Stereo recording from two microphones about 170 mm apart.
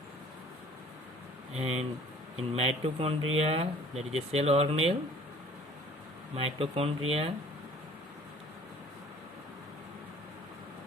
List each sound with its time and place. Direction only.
1.5 s speech: 35° right (ahead or behind)
6.3 s speech: 35° right (ahead or behind)